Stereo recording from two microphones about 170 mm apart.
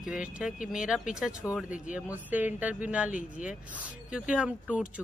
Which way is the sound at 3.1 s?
50° left (ahead or behind).